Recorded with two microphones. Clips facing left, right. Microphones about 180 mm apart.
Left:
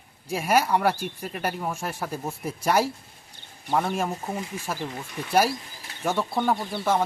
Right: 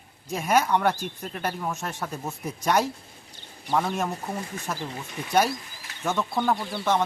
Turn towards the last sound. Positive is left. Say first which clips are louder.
# left 1 dB
turn(degrees=20)  # may be behind; listen again after turning